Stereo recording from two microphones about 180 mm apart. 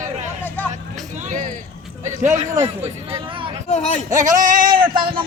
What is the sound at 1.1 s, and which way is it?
Speech, 45° right (ahead or behind).